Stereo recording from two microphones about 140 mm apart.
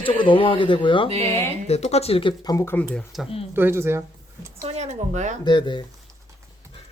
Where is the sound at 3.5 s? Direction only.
15° right (ahead or behind).